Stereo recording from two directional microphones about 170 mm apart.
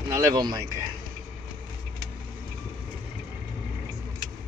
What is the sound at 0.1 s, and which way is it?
Speech, 20° right (ahead or behind).